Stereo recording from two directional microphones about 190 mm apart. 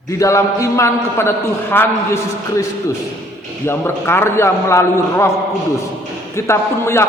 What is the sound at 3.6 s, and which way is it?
A man's voice, 10° left (ahead or behind).